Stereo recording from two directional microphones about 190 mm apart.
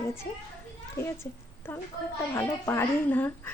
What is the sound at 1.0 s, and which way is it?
A woman's voice, 15° left (ahead or behind).